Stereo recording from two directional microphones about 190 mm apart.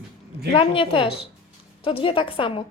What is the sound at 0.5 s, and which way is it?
A woman's voice, 30° left (ahead or behind).